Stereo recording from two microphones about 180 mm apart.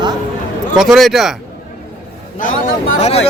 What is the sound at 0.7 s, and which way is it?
Speech, 5° right (ahead or behind).